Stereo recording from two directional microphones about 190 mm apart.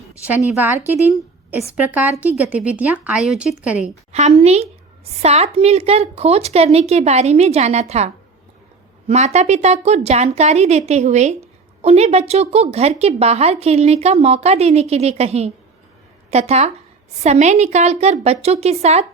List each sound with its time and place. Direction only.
0.3 s a woman's voice: 10° right (ahead or behind)
3.8 s a woman's voice: 35° right (ahead or behind)